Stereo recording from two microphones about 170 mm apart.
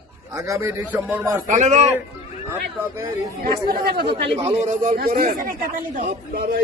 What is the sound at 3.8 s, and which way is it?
Speech, 70° right (ahead or behind).